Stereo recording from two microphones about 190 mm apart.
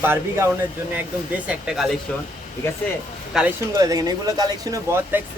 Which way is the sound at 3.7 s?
20° right (ahead or behind).